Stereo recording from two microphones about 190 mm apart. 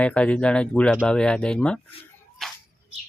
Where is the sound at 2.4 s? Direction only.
Centre (ahead or behind).